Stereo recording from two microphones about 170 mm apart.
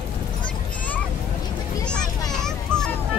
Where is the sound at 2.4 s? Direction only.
5° left (ahead or behind).